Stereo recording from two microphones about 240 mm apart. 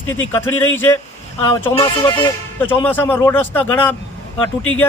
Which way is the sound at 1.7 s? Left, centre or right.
Centre.